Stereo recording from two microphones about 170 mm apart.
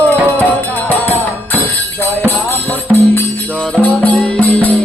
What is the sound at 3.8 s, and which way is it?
Music, 10° left (ahead or behind).